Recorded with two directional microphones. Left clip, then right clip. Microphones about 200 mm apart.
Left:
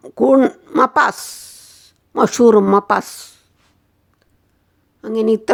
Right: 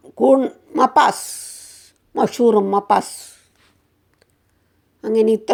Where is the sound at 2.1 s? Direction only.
15° left (ahead or behind).